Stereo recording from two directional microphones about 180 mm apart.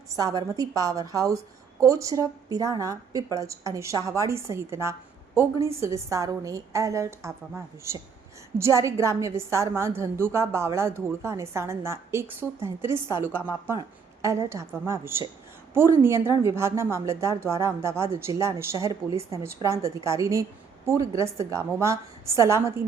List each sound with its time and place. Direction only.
0.2 s a woman's voice: 20° right (ahead or behind)
14.2 s a woman's voice: 15° right (ahead or behind)